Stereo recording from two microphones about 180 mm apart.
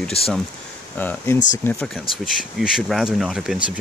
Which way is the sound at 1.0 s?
10° left (ahead or behind).